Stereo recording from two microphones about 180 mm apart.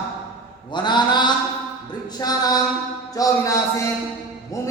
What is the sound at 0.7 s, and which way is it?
Mantra, 25° left (ahead or behind).